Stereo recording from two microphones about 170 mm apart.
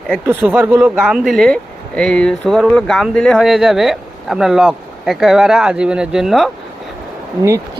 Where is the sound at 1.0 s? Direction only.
Centre (ahead or behind).